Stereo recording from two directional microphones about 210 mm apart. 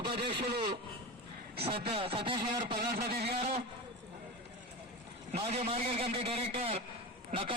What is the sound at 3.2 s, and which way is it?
Speech, 30° right (ahead or behind).